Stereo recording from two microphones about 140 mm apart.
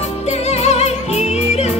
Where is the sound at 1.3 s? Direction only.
50° left (ahead or behind).